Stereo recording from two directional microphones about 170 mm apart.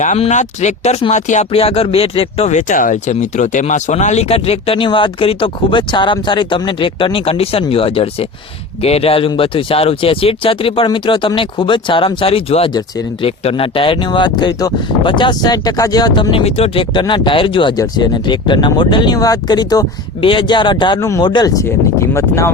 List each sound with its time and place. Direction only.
0.0 s speech: 45° left (ahead or behind); by 22.5 s 15° left (ahead or behind)